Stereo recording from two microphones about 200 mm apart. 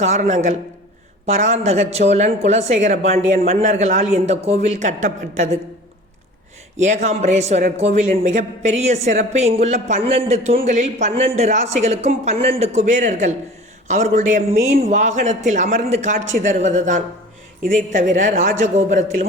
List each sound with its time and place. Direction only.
0.0 s a man's voice: 35° right (ahead or behind)
6.7 s a man's voice: 35° right (ahead or behind)